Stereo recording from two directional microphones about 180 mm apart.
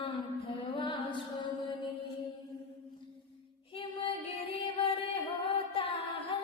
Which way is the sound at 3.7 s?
30° left (ahead or behind).